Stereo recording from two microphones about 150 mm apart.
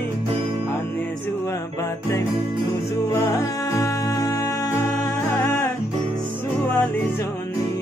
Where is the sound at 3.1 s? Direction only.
20° left (ahead or behind).